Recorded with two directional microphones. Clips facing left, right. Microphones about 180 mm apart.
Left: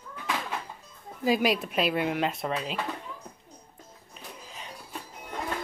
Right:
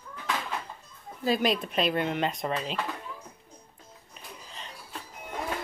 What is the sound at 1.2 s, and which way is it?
Speech, 10° left (ahead or behind).